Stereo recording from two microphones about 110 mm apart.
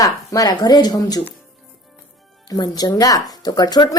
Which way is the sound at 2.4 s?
40° left (ahead or behind).